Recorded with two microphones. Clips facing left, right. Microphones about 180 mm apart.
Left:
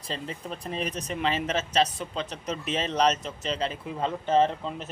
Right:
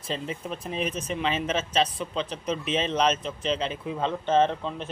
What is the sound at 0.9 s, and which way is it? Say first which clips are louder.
Speech: right 2 dB; 40° left (ahead or behind).